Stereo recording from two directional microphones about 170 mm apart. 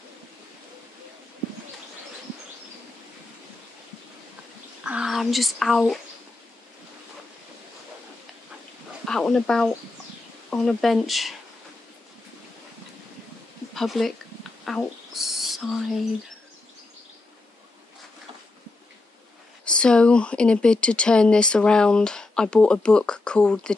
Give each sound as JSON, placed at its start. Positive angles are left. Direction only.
{"t": 4.8, "sound": "speech", "side_deg": -5}
{"t": 9.0, "sound": "speech", "side_deg": 5}
{"t": 13.7, "sound": "speech", "side_deg": 0}
{"t": 14.6, "sound": "a sound", "side_deg": 0}
{"t": 19.6, "sound": "speech", "side_deg": 5}